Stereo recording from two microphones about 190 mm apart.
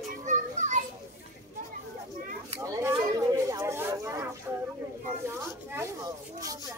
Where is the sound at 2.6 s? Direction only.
15° right (ahead or behind).